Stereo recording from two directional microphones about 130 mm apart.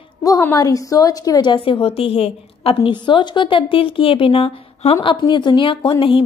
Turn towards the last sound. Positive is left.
turn(degrees=40)  # may be behind; listen again after turning